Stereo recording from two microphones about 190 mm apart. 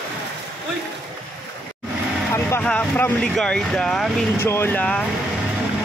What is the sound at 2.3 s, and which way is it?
Speech, 10° left (ahead or behind).